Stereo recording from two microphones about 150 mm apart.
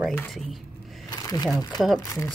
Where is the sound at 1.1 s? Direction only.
25° left (ahead or behind).